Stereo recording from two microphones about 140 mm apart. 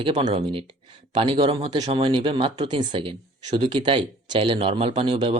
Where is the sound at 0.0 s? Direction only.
40° right (ahead or behind).